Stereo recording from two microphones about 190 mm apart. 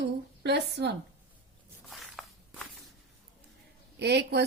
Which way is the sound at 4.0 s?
60° right (ahead or behind).